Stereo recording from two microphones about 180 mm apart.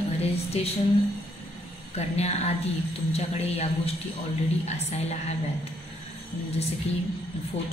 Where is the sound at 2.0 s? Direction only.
35° left (ahead or behind).